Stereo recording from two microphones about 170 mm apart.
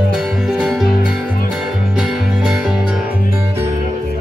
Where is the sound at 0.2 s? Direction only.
5° right (ahead or behind).